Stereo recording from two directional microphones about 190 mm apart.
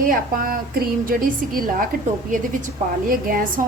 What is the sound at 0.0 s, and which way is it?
A woman's voice, 50° right (ahead or behind).